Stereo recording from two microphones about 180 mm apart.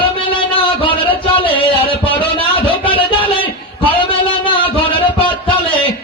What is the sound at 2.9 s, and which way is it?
Music, 30° left (ahead or behind).